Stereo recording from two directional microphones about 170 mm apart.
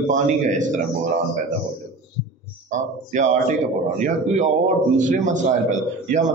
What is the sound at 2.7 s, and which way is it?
Speech, 45° right (ahead or behind).